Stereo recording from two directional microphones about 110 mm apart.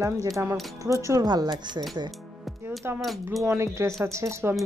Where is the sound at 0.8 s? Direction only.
30° right (ahead or behind).